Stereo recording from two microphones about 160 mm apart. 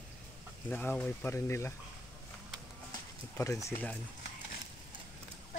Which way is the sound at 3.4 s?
20° left (ahead or behind).